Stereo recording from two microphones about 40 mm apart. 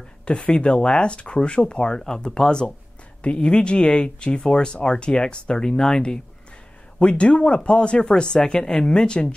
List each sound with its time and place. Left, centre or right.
0.2 s speech: left
7.0 s speech: left